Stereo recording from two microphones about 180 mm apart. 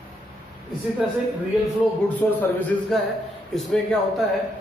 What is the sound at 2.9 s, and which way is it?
Speech, centre (ahead or behind).